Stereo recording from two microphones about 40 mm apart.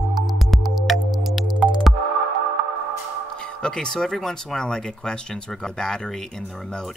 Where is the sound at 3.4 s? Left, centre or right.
Centre.